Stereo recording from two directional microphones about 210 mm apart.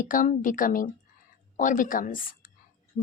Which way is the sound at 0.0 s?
40° left (ahead or behind).